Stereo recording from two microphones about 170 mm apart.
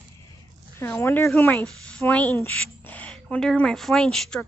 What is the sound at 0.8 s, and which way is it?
A woman's voice, 15° left (ahead or behind).